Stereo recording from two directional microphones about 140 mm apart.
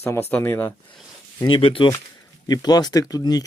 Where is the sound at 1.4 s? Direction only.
40° left (ahead or behind).